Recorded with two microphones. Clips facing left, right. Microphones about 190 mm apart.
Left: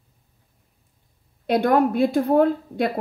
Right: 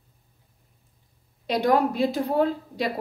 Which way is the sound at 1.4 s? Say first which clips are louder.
Left 3 dB; 55° left (ahead or behind).